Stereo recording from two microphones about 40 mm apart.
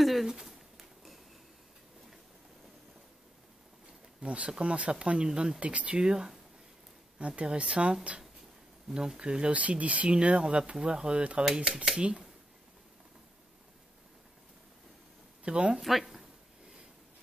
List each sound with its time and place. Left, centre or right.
0.0 s a sound: centre
0.3 s a sound: centre
4.2 s speech: right
7.2 s speech: right
8.8 s speech: centre
9.6 s speech: right
15.4 s speech: right
15.8 s speech: centre